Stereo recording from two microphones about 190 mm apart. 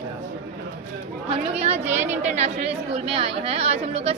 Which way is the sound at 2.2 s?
35° right (ahead or behind).